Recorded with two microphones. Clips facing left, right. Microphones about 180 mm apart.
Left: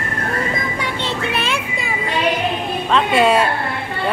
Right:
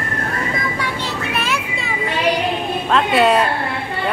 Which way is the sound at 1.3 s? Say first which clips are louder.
Even; 25° left (ahead or behind).